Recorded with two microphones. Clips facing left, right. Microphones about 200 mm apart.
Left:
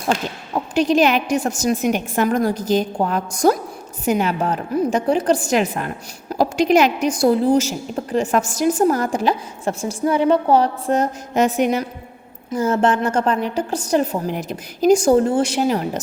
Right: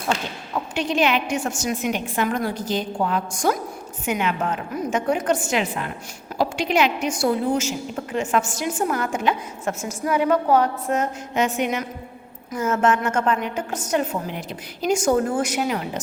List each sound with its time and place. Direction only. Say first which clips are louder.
0.5 s a woman's voice: left 7 dB; 40° left (ahead or behind)